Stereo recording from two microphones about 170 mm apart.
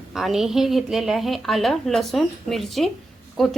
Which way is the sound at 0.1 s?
Centre (ahead or behind).